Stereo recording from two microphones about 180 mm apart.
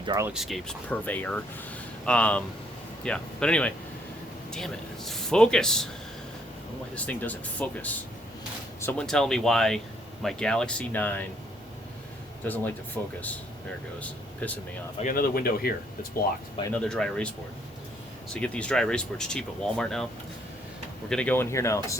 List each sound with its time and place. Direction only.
0.0 s speech: 25° right (ahead or behind)
0.3 s speech: centre (ahead or behind)
6.9 s speech: 5° left (ahead or behind)
12.4 s speech: 10° left (ahead or behind)
14.9 s speech: 50° left (ahead or behind)
16.7 s speech: 5° left (ahead or behind)
18.3 s speech: 5° left (ahead or behind)
21.1 s speech: 5° left (ahead or behind)